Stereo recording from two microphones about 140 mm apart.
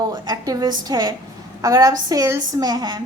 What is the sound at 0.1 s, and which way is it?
A woman's voice, 30° right (ahead or behind).